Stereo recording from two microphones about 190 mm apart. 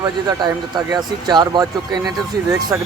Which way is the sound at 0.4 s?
20° right (ahead or behind).